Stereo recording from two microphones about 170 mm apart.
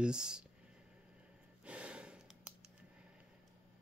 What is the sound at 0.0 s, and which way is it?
Speech, 5° right (ahead or behind).